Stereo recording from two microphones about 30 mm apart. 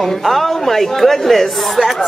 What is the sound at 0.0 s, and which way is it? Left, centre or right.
Speech, centre.